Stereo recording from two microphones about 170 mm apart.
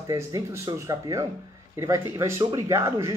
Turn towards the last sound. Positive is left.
turn(degrees=-15)  # may be behind; listen again after turning